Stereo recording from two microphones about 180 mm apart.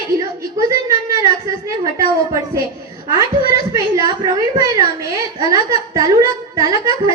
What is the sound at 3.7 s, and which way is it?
A woman's voice, 20° right (ahead or behind).